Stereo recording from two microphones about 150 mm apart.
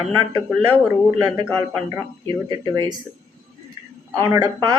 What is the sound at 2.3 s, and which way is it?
Speech, 30° right (ahead or behind).